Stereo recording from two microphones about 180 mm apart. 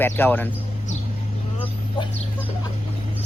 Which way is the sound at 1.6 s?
30° left (ahead or behind).